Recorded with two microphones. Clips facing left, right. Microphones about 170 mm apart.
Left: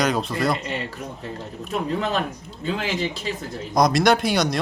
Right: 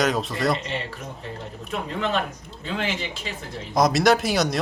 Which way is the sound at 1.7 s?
40° left (ahead or behind).